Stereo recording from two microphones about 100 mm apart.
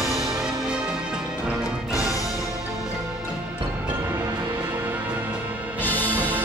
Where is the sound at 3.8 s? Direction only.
20° right (ahead or behind).